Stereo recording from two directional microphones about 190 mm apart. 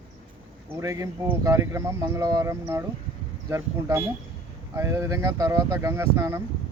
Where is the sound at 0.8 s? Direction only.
15° right (ahead or behind).